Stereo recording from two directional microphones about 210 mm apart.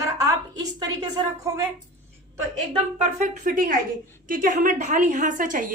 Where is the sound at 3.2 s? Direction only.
40° right (ahead or behind).